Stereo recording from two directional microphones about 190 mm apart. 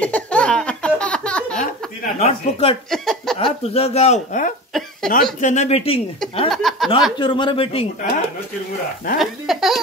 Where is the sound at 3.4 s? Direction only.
30° left (ahead or behind).